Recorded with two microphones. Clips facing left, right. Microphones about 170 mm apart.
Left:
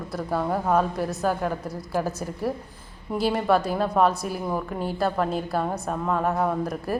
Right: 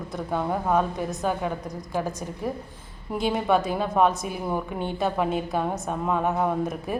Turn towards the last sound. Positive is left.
turn(degrees=0)  # may be behind; listen again after turning